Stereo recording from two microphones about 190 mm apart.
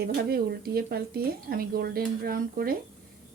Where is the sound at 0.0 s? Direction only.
55° right (ahead or behind).